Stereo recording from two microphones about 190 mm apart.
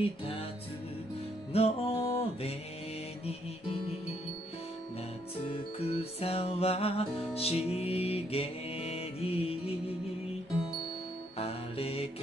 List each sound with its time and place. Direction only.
1.5 s music: 30° left (ahead or behind)
5.5 s music: 30° left (ahead or behind)
11.3 s music: 30° left (ahead or behind)